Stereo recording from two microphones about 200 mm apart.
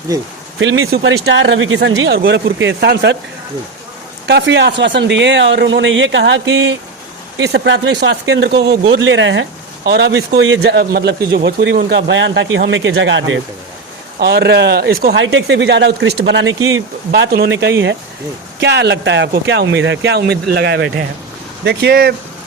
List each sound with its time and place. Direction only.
0.6 s speech: 65° right (ahead or behind)
4.3 s speech: 60° right (ahead or behind)
8.8 s speech: 70° right (ahead or behind)
14.2 s speech: 55° right (ahead or behind)